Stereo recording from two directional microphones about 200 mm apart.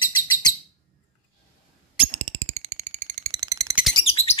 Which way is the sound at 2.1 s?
25° right (ahead or behind).